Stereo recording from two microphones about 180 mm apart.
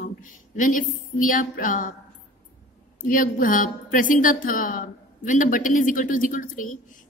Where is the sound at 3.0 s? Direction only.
50° left (ahead or behind).